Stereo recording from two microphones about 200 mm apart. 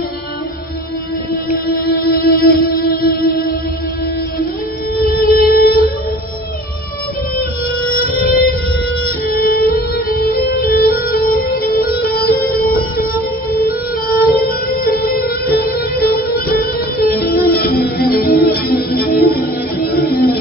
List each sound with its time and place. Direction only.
2.0 s music: 45° left (ahead or behind)
5.3 s music: 50° left (ahead or behind)
8.1 s a sound: 45° left (ahead or behind)
9.3 s music: 45° left (ahead or behind)